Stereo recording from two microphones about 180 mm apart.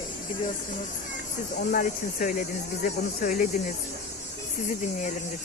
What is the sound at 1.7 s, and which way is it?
Speech, 50° left (ahead or behind).